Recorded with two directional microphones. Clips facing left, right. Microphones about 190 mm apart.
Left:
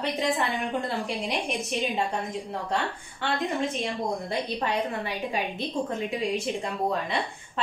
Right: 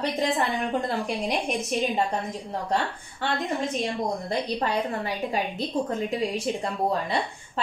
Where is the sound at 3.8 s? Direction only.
40° right (ahead or behind).